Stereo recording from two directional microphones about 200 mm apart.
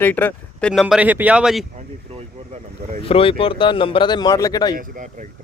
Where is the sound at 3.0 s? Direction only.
25° left (ahead or behind).